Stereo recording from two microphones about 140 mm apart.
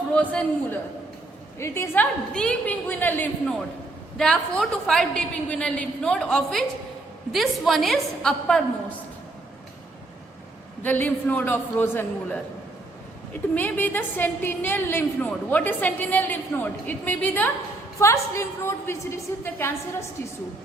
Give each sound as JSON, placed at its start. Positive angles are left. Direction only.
{"t": 0.1, "sound": "a woman's voice", "side_deg": 10}
{"t": 10.8, "sound": "a woman's voice", "side_deg": 10}